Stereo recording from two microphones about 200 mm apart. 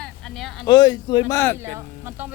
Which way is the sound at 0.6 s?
20° left (ahead or behind).